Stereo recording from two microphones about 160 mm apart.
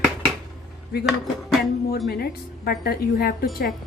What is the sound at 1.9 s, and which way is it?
A woman's voice, 75° left (ahead or behind).